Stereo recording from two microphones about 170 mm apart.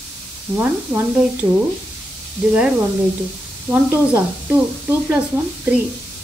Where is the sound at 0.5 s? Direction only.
10° right (ahead or behind).